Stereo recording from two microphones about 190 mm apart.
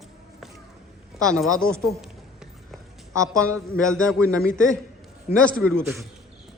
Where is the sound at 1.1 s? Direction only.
Centre (ahead or behind).